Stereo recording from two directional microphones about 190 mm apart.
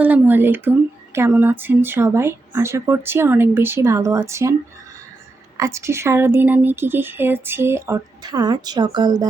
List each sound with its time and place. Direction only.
0.0 s a woman's voice: 10° right (ahead or behind)
5.5 s a woman's voice: 15° right (ahead or behind)